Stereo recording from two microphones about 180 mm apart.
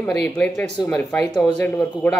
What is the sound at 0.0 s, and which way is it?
Speech, 5° left (ahead or behind).